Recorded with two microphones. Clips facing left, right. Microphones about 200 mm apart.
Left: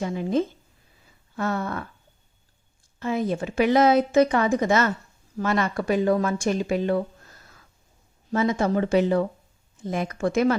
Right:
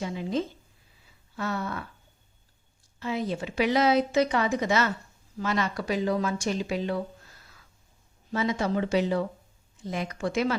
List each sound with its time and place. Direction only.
0.0 s a woman's voice: 50° left (ahead or behind)
3.0 s a woman's voice: 50° left (ahead or behind)
8.3 s a woman's voice: 50° left (ahead or behind)